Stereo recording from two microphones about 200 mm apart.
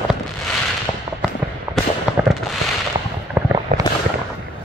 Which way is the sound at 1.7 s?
15° right (ahead or behind).